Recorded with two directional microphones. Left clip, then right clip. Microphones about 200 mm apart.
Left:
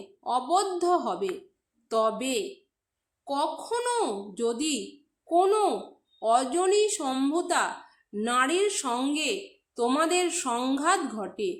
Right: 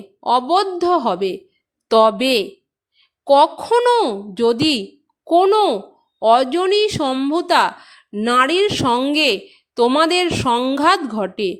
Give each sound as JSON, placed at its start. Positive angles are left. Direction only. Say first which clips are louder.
{"t": 0.2, "sound": "a woman's voice", "louder": "right 10 dB", "side_deg": -40}